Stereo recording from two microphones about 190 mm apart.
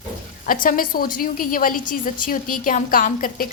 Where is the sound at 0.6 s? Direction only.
45° left (ahead or behind).